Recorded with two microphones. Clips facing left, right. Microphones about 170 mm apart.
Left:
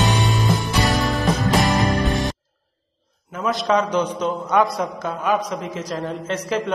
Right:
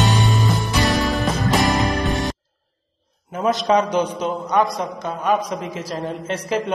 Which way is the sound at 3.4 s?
30° right (ahead or behind).